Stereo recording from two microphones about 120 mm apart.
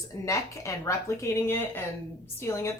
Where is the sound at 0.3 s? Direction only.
25° left (ahead or behind).